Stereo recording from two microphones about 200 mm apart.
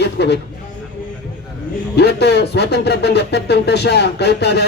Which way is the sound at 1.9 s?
55° left (ahead or behind).